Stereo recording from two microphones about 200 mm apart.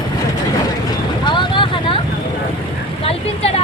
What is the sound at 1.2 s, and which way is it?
Vehicle, 25° left (ahead or behind).